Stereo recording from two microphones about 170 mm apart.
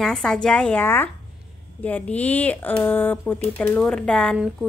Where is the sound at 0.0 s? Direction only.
5° left (ahead or behind).